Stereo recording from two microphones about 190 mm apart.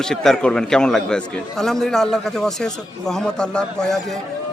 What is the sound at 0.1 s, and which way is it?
A man's voice, 5° left (ahead or behind).